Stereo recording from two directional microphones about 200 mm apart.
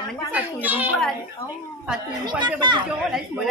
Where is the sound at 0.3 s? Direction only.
10° right (ahead or behind).